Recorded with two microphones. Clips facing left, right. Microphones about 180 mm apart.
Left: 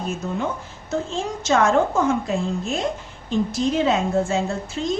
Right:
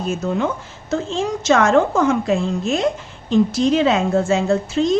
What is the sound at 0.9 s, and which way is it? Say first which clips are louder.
A woman's voice: right 4 dB; 90° right.